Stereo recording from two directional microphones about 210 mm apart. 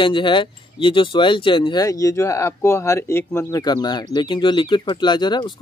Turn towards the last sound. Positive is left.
turn(degrees=20)  # may be behind; listen again after turning